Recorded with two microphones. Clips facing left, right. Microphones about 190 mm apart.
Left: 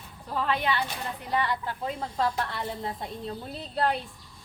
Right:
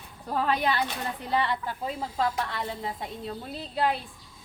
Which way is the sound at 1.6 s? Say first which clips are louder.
Even; 5° right (ahead or behind).